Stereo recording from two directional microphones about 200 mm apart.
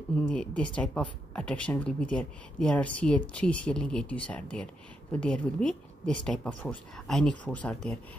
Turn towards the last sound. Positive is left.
turn(degrees=5)  # may be behind; listen again after turning